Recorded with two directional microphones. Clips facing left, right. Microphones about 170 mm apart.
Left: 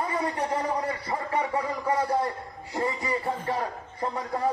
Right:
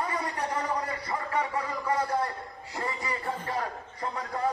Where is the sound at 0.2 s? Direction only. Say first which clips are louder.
Left 4 dB; 25° left (ahead or behind).